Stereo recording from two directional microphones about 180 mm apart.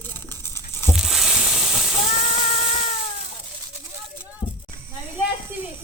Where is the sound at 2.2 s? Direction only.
35° left (ahead or behind).